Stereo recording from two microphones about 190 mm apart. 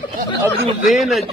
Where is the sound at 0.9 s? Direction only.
Centre (ahead or behind).